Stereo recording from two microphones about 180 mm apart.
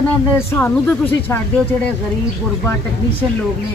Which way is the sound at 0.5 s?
10° left (ahead or behind).